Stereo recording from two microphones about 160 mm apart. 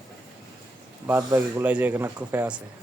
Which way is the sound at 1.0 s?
15° right (ahead or behind).